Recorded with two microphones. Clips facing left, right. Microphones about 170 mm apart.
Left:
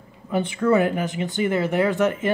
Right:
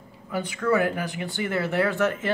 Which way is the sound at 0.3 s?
25° left (ahead or behind).